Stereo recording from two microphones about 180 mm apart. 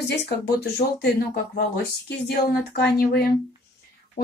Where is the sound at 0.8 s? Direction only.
45° left (ahead or behind).